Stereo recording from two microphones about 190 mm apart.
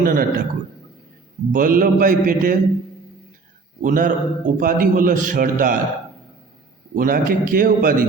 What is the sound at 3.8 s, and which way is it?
A man's voice, 45° right (ahead or behind).